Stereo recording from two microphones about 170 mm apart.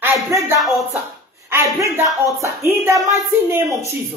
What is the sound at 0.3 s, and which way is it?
Speech, 15° right (ahead or behind).